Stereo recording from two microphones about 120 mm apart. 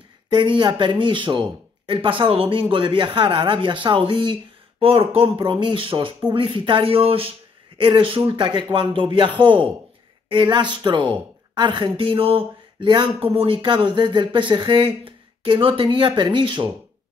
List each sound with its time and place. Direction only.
0.3 s a woman's voice: 40° right (ahead or behind)